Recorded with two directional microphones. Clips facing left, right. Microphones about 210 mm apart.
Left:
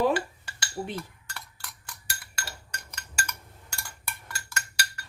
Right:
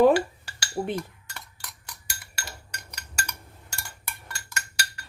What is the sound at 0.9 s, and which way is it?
Dishes, 15° right (ahead or behind).